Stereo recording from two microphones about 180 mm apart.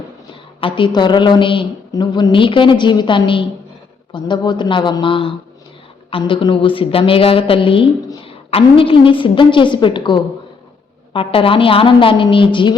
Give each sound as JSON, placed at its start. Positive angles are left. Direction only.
{"t": 0.6, "sound": "a woman's voice", "side_deg": 25}